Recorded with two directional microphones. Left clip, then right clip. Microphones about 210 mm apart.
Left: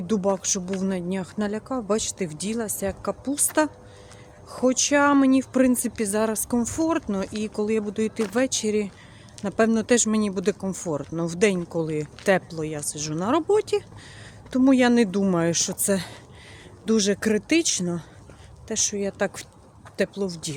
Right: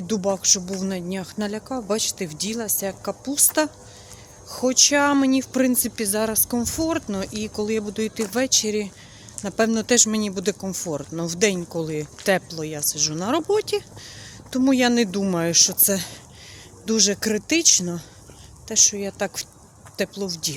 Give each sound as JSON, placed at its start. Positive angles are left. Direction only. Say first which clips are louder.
{"t": 0.1, "sound": "speech", "louder": "right 3 dB", "side_deg": 10}